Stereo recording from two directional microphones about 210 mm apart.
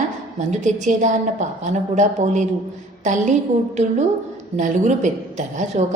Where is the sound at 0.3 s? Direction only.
35° right (ahead or behind).